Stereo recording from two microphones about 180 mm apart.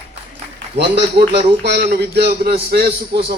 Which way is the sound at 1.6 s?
70° right (ahead or behind).